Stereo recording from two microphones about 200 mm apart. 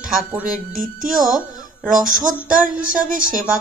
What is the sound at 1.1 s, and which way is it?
Speech, centre (ahead or behind).